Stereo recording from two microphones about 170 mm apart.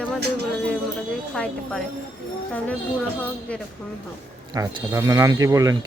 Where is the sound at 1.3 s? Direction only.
5° left (ahead or behind).